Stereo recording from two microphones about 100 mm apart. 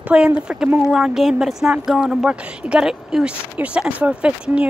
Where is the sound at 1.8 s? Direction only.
5° right (ahead or behind).